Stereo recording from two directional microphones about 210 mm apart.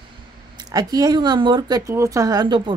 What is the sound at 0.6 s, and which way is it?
Speech, 20° right (ahead or behind).